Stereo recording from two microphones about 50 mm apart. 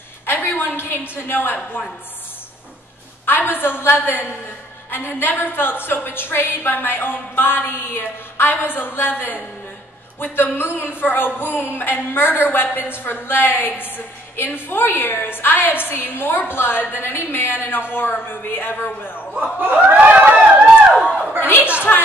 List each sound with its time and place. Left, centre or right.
0.3 s a woman's voice: left
3.3 s a woman's voice: left
19.6 s snicker: right
20.3 s run: right
21.4 s a sound: left